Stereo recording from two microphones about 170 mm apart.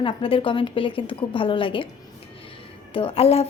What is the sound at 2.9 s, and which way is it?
Speech, 35° left (ahead or behind).